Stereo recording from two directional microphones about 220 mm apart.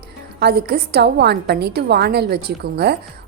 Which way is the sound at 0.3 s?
45° right (ahead or behind).